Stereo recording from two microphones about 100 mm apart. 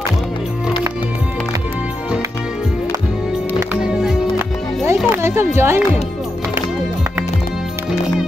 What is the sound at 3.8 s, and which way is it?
Music, 5° right (ahead or behind).